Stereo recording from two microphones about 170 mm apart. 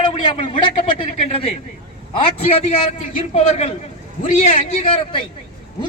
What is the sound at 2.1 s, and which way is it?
A man's voice, 35° left (ahead or behind).